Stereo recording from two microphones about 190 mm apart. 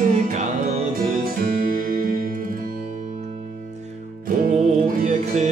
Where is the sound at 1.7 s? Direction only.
45° right (ahead or behind).